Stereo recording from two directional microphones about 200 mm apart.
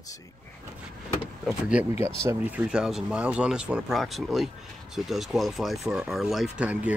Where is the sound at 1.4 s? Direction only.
5° right (ahead or behind).